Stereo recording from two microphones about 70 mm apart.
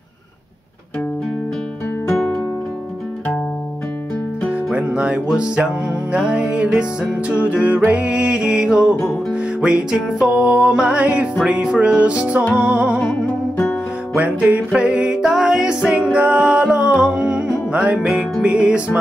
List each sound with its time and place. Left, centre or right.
4.7 s music: centre
14.1 s music: right